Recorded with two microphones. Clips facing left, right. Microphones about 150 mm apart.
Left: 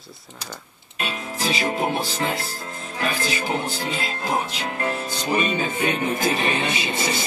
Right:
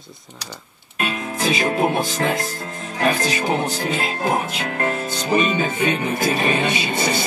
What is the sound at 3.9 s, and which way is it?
Music, 55° right (ahead or behind).